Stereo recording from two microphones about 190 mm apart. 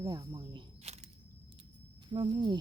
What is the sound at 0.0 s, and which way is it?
Cricket, 20° right (ahead or behind).